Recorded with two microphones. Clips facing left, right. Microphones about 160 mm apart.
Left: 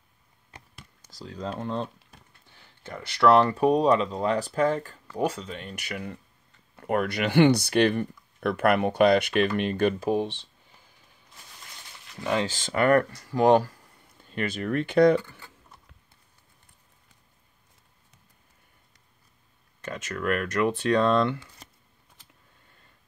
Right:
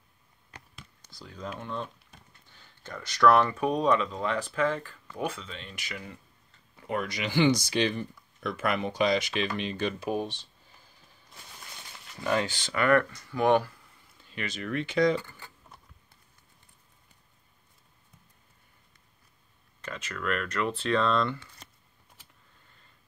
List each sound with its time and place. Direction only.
1.2 s speech: 35° left (ahead or behind)
2.5 s a sound: 65° left (ahead or behind)
3.2 s speech: 30° left (ahead or behind); by 10.0 s 55° left (ahead or behind)
10.0 s speech: 30° left (ahead or behind)
12.2 s speech: 20° left (ahead or behind)
12.4 s speech: 45° left (ahead or behind)
19.8 s speech: 50° left (ahead or behind)